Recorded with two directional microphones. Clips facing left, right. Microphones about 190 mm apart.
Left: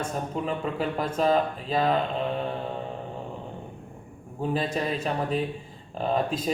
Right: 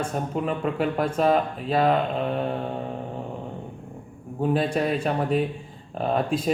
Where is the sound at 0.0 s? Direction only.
5° right (ahead or behind).